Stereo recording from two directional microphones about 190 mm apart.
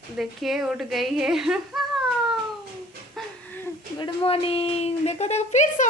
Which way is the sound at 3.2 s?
Centre (ahead or behind).